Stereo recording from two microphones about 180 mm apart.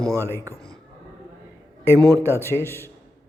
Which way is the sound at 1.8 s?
15° right (ahead or behind).